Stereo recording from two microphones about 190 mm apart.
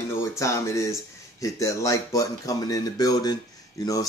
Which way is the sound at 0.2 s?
15° left (ahead or behind).